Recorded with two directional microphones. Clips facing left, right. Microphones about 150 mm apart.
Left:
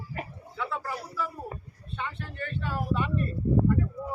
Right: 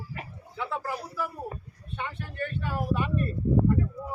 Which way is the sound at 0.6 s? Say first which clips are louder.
Right 1 dB; 15° right (ahead or behind).